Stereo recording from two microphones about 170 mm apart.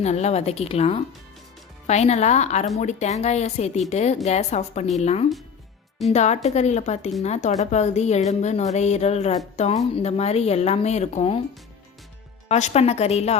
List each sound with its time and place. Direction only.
0.0 s speech: 40° left (ahead or behind)
12.5 s speech: 40° left (ahead or behind)